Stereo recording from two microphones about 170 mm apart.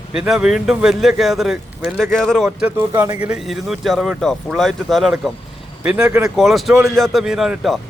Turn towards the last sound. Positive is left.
turn(degrees=-5)  # may be behind; listen again after turning